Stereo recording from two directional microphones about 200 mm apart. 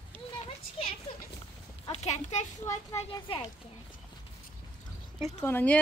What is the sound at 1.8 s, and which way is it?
Speech, 30° left (ahead or behind).